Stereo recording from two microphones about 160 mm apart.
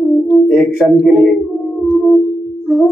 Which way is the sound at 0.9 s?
Centre (ahead or behind).